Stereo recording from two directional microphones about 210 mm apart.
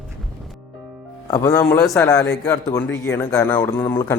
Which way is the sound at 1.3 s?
15° left (ahead or behind).